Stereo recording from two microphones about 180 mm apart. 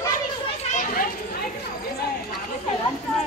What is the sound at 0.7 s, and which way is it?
Children playing, 50° left (ahead or behind).